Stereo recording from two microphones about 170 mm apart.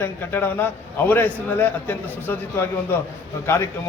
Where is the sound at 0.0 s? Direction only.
10° left (ahead or behind).